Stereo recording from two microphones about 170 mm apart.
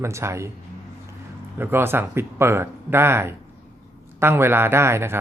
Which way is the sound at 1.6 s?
15° right (ahead or behind).